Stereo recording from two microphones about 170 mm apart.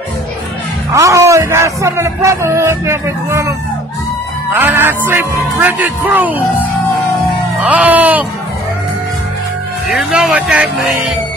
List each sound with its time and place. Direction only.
0.9 s speech: 20° right (ahead or behind)
7.6 s speech: 10° right (ahead or behind)
9.8 s speech: centre (ahead or behind)